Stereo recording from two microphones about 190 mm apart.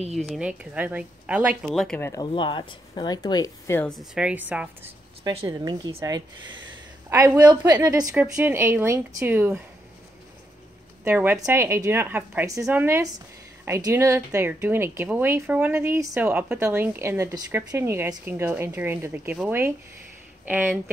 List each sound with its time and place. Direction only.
0.0 s a woman's voice: 35° right (ahead or behind)
0.3 s a woman's voice: 5° right (ahead or behind); by 2.2 s 10° left (ahead or behind)
2.3 s speech: 25° left (ahead or behind)
3.9 s a woman's voice: centre (ahead or behind)
5.2 s speech: 30° right (ahead or behind)
5.9 s a woman's voice: 20° right (ahead or behind)
11.1 s speech: 15° right (ahead or behind)